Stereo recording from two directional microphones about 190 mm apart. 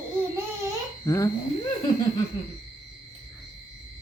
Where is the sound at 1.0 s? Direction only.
15° left (ahead or behind).